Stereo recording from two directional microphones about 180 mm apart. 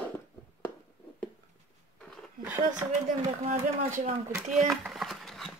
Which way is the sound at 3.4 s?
35° right (ahead or behind).